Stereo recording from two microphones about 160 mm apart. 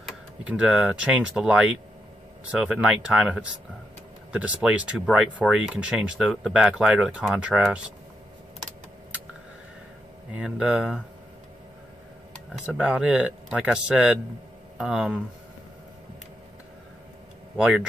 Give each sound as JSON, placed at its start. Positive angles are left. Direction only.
{"t": 0.0, "sound": "speech", "side_deg": -5}
{"t": 10.3, "sound": "speech", "side_deg": -5}
{"t": 12.6, "sound": "speech", "side_deg": -5}
{"t": 17.6, "sound": "speech", "side_deg": -5}